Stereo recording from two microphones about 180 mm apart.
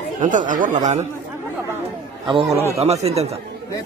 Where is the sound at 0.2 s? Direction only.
45° right (ahead or behind).